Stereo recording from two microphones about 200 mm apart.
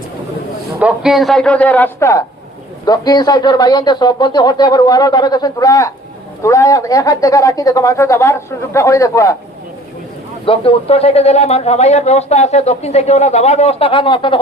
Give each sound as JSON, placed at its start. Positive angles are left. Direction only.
{"t": 0.8, "sound": "a man's voice", "side_deg": -5}
{"t": 10.4, "sound": "a man's voice", "side_deg": 25}